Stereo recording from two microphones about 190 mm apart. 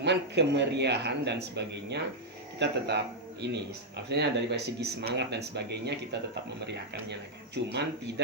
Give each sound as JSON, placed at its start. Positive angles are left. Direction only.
{"t": 0.0, "sound": "speech", "side_deg": -65}